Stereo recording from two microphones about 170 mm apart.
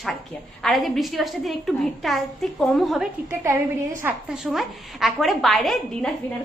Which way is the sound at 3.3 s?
15° right (ahead or behind).